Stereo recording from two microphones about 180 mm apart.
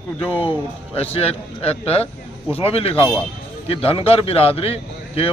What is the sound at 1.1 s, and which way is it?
A man's voice, 35° left (ahead or behind).